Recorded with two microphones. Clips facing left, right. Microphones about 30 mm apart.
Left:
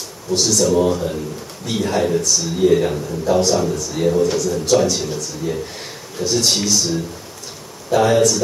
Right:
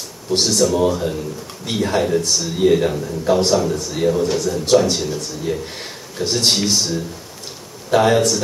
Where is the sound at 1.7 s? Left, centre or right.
Right.